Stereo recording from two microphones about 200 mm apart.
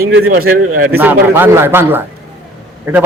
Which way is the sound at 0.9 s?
10° right (ahead or behind).